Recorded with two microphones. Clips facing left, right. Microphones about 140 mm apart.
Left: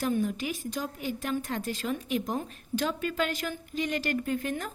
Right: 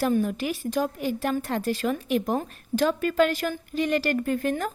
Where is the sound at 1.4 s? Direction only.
75° right (ahead or behind).